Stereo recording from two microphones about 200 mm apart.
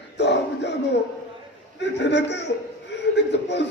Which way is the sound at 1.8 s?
60° left (ahead or behind).